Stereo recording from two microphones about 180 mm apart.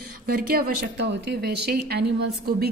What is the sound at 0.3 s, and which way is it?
Speech, 55° right (ahead or behind).